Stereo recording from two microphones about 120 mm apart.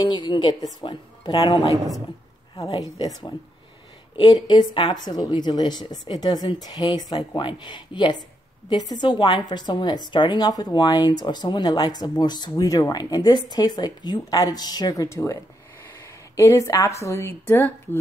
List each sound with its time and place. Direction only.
0.0 s a woman's voice: 40° left (ahead or behind)
4.2 s a woman's voice: 40° left (ahead or behind); by 17.7 s 20° left (ahead or behind)